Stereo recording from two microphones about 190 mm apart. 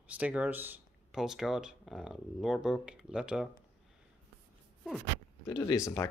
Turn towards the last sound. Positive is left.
turn(degrees=20)  # may be behind; listen again after turning